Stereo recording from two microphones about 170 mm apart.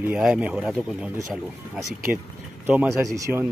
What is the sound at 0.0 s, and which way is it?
Speech, 5° right (ahead or behind).